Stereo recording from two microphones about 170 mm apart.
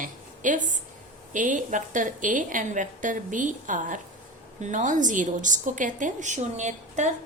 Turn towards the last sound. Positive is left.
turn(degrees=-45)  # may be behind; listen again after turning